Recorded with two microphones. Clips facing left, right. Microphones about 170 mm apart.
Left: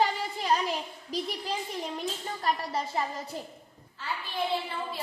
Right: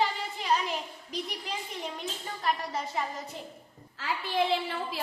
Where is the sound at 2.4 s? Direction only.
35° left (ahead or behind).